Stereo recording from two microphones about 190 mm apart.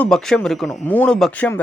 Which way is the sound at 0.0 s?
5° left (ahead or behind).